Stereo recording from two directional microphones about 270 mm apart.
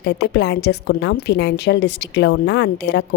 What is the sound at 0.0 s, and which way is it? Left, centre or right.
A woman's voice, left.